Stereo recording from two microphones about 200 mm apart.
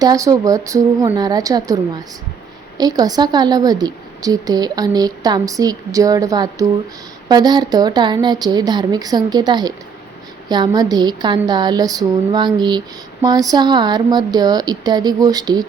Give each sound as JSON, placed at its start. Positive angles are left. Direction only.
{"t": 0.0, "sound": "a woman's voice", "side_deg": -20}